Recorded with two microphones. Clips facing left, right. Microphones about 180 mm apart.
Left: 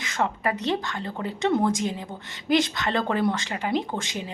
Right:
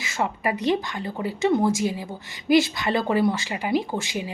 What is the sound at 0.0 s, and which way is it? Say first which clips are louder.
A woman's voice: even; 10° right (ahead or behind).